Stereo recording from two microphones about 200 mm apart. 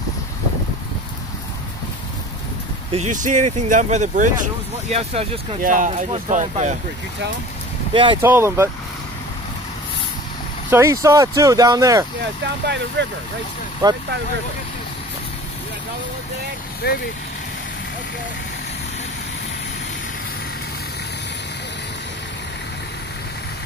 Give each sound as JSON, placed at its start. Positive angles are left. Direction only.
{"t": 2.9, "sound": "speech", "side_deg": -35}
{"t": 7.9, "sound": "speech", "side_deg": -25}
{"t": 8.2, "sound": "speech", "side_deg": -10}
{"t": 10.7, "sound": "speech", "side_deg": -15}
{"t": 13.0, "sound": "speech", "side_deg": -60}
{"t": 13.8, "sound": "speech", "side_deg": -20}
{"t": 16.8, "sound": "speech", "side_deg": 55}